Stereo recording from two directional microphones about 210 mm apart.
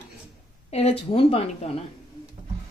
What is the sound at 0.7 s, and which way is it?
Speech, 30° left (ahead or behind).